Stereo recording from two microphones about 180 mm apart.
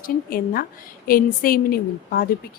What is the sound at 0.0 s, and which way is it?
A woman's voice, 55° left (ahead or behind).